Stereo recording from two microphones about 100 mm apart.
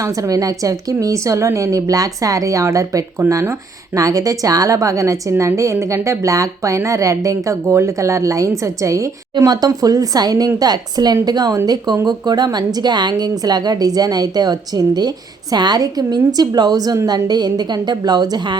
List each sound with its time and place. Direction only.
0.0 s a woman's voice: 35° right (ahead or behind)